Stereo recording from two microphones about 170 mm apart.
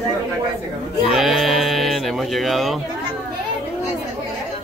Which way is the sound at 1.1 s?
Centre (ahead or behind).